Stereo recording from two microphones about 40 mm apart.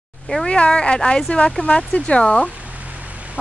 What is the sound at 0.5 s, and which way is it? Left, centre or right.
Speech, left.